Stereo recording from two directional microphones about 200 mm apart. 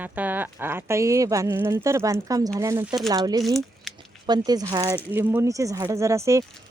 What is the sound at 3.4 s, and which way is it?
Speech, centre (ahead or behind).